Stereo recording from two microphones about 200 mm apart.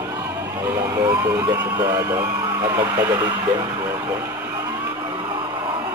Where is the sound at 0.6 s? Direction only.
15° right (ahead or behind).